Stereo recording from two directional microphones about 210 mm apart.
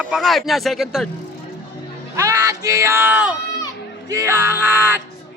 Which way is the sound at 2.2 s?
15° right (ahead or behind).